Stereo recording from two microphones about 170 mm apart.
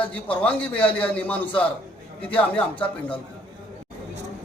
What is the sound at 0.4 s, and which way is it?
A man's voice, 10° left (ahead or behind).